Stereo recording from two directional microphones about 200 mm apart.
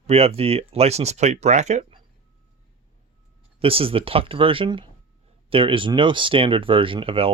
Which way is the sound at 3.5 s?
30° right (ahead or behind).